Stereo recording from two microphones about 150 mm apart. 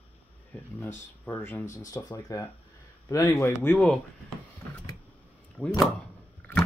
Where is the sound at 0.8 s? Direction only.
10° left (ahead or behind).